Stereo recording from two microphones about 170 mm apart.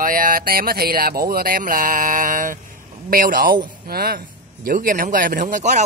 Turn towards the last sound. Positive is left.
turn(degrees=-45)  # may be behind; listen again after turning